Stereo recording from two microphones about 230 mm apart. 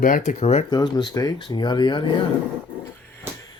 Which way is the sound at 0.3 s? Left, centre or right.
Left.